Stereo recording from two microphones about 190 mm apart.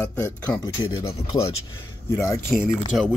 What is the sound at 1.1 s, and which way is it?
Speech, 30° left (ahead or behind).